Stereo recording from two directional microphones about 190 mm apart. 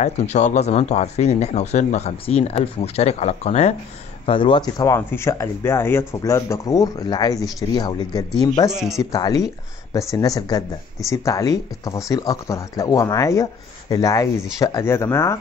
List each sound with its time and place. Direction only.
0.0 s speech: 35° left (ahead or behind); by 8.3 s 20° left (ahead or behind)
8.6 s speech: centre (ahead or behind)
9.1 s speech: 20° left (ahead or behind)